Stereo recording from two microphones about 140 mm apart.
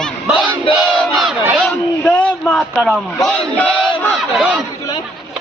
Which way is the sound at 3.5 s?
10° left (ahead or behind).